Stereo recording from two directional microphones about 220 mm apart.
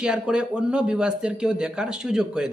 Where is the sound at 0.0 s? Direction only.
5° right (ahead or behind).